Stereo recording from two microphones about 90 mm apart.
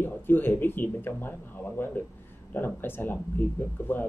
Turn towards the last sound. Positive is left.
turn(degrees=25)  # may be behind; listen again after turning